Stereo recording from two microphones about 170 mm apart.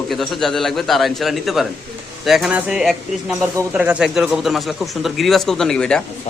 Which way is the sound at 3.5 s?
15° right (ahead or behind).